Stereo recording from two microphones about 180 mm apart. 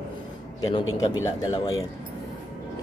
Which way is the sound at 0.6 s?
20° left (ahead or behind).